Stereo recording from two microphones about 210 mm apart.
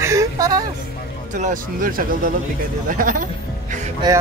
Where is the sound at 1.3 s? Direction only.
40° right (ahead or behind).